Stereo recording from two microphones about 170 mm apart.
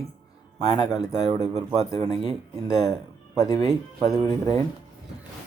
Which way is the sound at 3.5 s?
40° right (ahead or behind).